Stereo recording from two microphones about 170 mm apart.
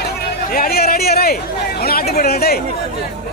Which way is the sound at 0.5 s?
65° left (ahead or behind).